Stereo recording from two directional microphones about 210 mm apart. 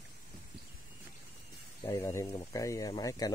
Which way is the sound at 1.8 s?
10° left (ahead or behind).